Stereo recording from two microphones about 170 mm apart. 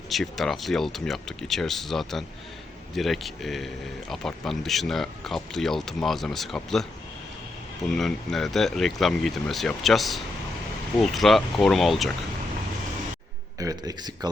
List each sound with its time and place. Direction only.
0.1 s speech: centre (ahead or behind)
13.6 s speech: 20° right (ahead or behind)